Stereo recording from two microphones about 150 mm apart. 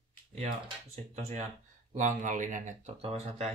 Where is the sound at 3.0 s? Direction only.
40° right (ahead or behind).